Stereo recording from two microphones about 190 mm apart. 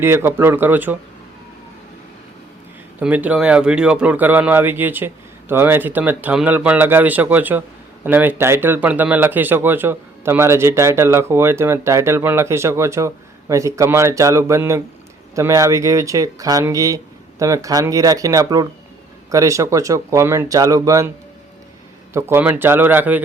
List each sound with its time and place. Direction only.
0.0 s speech: 10° right (ahead or behind)
3.0 s speech: 10° right (ahead or behind)
22.1 s speech: 10° right (ahead or behind)